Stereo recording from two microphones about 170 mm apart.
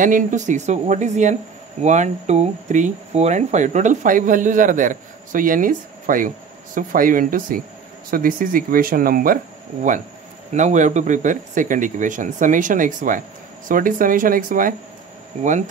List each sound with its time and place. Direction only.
0.0 s speech: 50° right (ahead or behind)